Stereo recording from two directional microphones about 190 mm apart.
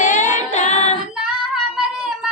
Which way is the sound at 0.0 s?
40° left (ahead or behind).